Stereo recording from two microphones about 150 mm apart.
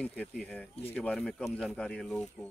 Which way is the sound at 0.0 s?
5° left (ahead or behind).